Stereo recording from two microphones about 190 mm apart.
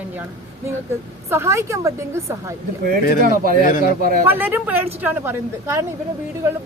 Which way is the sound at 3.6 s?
45° left (ahead or behind).